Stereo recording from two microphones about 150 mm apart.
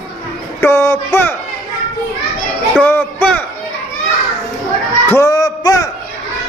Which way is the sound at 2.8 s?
10° left (ahead or behind).